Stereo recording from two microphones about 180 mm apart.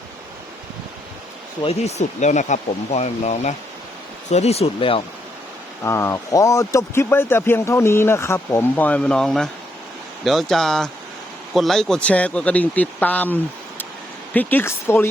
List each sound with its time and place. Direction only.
1.6 s speech: 40° left (ahead or behind)
5.8 s speech: 15° left (ahead or behind)